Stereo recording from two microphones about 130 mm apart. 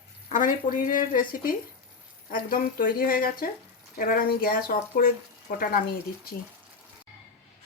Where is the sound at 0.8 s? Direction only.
90° left.